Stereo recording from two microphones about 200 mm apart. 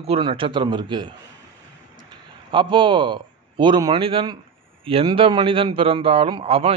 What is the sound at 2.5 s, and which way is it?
A man's voice, 25° right (ahead or behind).